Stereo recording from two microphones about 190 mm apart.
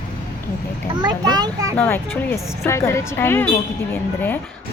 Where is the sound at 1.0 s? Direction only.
20° right (ahead or behind).